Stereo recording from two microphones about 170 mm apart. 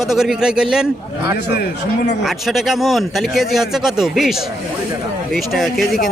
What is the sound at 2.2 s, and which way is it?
Speech, centre (ahead or behind).